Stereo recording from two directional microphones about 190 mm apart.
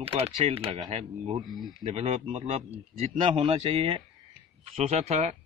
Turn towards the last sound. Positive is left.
turn(degrees=-35)  # may be behind; listen again after turning